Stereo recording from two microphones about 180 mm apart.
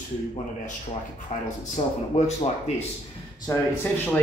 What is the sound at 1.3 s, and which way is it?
Speech, 40° left (ahead or behind).